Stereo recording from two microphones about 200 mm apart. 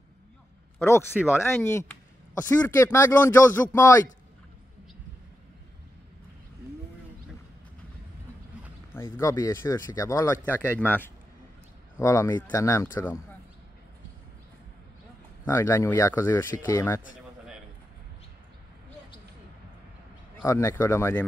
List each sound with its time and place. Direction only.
0.7 s speech: 10° left (ahead or behind)
1.1 s speech: 5° right (ahead or behind)
1.6 s speech: 10° left (ahead or behind)
8.9 s speech: 15° left (ahead or behind)
15.4 s speech: 15° left (ahead or behind)
20.4 s speech: 15° left (ahead or behind)